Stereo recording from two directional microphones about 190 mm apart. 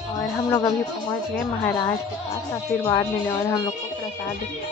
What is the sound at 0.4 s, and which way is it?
Music, 20° left (ahead or behind).